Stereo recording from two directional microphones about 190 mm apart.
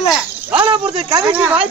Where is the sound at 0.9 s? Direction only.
25° right (ahead or behind).